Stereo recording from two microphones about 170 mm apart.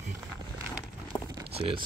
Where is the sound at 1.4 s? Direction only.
35° right (ahead or behind).